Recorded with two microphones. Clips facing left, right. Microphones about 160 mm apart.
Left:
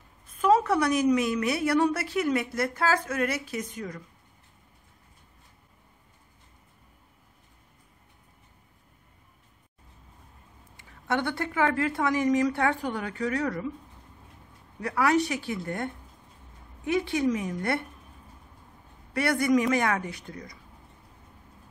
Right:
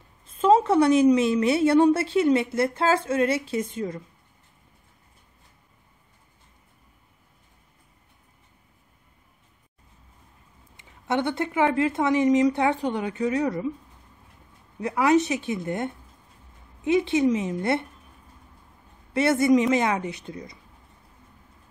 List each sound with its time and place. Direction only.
0.3 s a woman's voice: 25° right (ahead or behind)
10.8 s a woman's voice: 20° right (ahead or behind)
14.8 s a woman's voice: 20° right (ahead or behind)
19.1 s a woman's voice: 25° right (ahead or behind)